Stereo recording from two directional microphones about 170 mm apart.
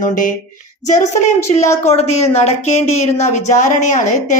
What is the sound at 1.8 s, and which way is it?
Speech, 40° left (ahead or behind).